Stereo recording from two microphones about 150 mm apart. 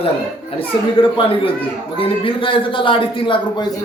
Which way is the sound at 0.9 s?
35° left (ahead or behind).